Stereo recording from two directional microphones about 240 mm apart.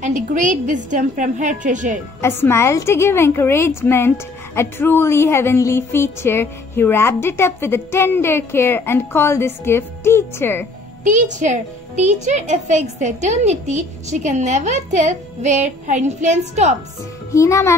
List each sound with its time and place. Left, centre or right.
0.0 s a woman's voice: right
2.2 s speech: centre
11.1 s a child's voice: right
17.3 s speech: centre